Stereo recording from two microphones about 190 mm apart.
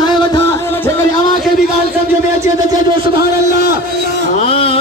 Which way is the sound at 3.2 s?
55° left (ahead or behind).